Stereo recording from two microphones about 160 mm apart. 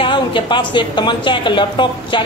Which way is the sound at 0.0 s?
30° left (ahead or behind).